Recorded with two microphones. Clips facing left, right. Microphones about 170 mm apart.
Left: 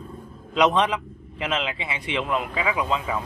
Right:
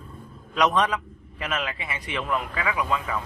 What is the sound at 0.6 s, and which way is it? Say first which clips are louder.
A man's voice: left 2 dB; 25° left (ahead or behind).